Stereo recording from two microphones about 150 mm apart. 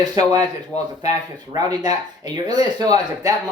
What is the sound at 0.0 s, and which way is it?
Speech, 25° right (ahead or behind).